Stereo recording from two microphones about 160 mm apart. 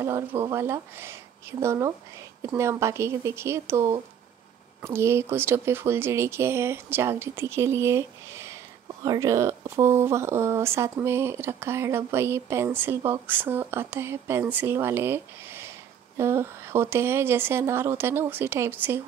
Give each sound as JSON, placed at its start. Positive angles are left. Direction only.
{"t": 0.0, "sound": "speech", "side_deg": -15}